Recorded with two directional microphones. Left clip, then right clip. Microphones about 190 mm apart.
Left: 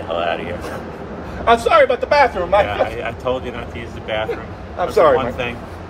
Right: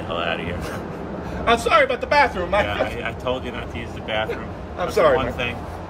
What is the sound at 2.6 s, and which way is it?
A man's voice, 15° right (ahead or behind).